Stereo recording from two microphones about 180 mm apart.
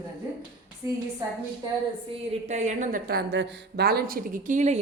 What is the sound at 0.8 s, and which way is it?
Speech, 15° right (ahead or behind).